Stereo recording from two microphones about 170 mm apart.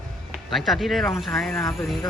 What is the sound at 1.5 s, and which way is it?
Speech, 15° left (ahead or behind).